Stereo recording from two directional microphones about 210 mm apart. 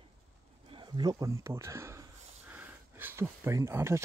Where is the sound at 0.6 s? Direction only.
20° right (ahead or behind).